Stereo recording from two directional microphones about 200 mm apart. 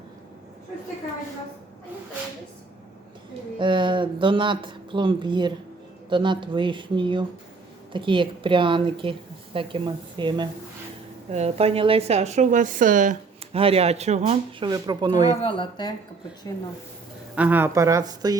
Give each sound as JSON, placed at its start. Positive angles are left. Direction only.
{"t": 3.6, "sound": "a woman's voice", "side_deg": -25}
{"t": 14.7, "sound": "a woman's voice", "side_deg": -20}
{"t": 15.4, "sound": "speech", "side_deg": 25}
{"t": 17.3, "sound": "speech", "side_deg": -10}